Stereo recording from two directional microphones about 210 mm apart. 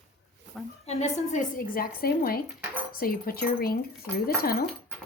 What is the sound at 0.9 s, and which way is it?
Speech, 30° left (ahead or behind).